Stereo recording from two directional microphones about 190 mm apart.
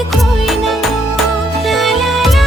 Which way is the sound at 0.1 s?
Centre (ahead or behind).